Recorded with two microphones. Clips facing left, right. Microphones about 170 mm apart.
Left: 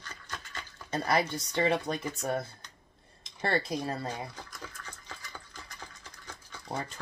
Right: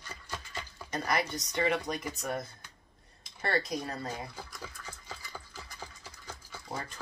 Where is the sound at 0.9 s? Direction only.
30° left (ahead or behind).